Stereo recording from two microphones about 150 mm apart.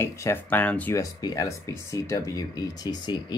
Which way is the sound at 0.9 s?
25° left (ahead or behind).